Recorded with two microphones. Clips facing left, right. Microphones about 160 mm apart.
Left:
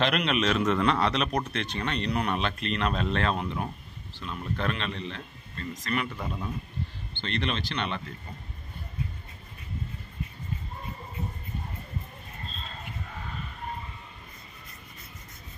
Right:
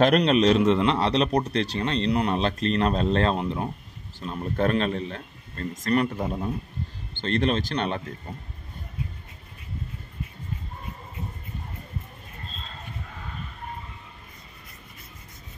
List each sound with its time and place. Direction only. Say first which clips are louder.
0.0 s speech: right 7 dB; 40° right (ahead or behind)
4.2 s speech: right 7 dB; 40° right (ahead or behind)